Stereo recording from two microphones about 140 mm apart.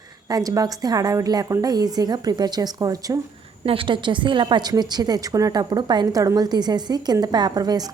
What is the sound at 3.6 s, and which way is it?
A woman's voice, 40° right (ahead or behind).